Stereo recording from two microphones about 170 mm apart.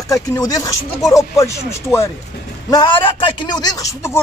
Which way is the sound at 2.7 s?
25° left (ahead or behind).